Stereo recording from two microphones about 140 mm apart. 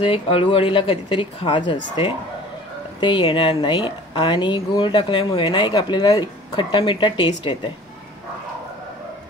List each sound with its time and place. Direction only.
0.0 s speech: 40° left (ahead or behind)